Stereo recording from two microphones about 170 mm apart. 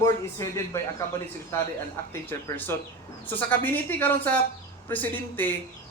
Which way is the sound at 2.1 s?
10° left (ahead or behind).